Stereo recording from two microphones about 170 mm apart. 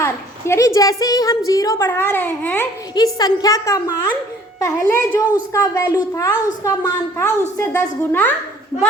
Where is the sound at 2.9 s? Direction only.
25° left (ahead or behind).